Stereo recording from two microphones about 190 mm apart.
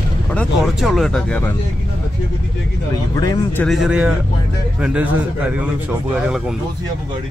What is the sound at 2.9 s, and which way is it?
Speech, 20° left (ahead or behind).